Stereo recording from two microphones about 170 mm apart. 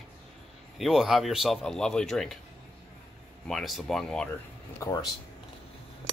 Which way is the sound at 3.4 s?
Centre (ahead or behind).